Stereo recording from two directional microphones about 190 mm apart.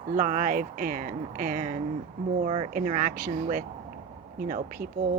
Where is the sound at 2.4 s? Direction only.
35° right (ahead or behind).